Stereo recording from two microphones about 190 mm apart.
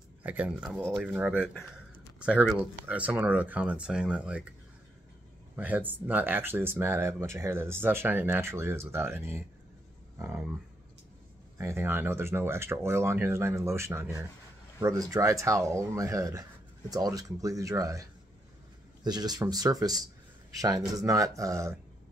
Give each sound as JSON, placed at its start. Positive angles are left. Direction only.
{"t": 0.2, "sound": "speech", "side_deg": -10}
{"t": 5.6, "sound": "speech", "side_deg": -10}
{"t": 11.5, "sound": "speech", "side_deg": -15}
{"t": 19.0, "sound": "speech", "side_deg": -20}